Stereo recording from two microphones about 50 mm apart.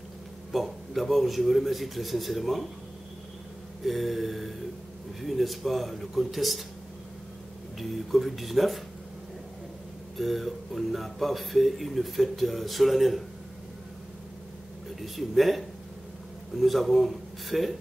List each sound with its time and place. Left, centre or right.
0.5 s speech: centre
3.8 s speech: centre
8.1 s speech: centre
10.1 s speech: centre
15.0 s speech: centre
16.6 s speech: centre